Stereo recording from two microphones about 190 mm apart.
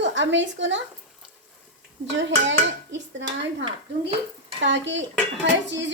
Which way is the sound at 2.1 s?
70° right (ahead or behind).